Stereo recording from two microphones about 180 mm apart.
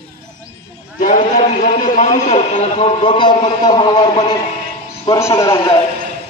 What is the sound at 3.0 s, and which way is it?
A man's voice, 25° left (ahead or behind).